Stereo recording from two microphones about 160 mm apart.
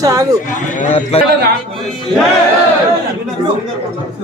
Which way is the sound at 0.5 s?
50° left (ahead or behind).